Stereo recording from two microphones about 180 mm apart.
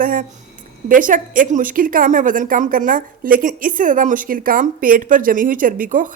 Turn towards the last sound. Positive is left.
turn(degrees=-50)  # may be behind; listen again after turning